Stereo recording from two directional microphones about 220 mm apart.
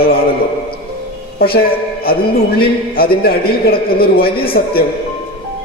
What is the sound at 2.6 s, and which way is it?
A man's voice, 45° left (ahead or behind).